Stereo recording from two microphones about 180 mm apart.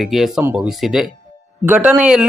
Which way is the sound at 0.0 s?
Centre (ahead or behind).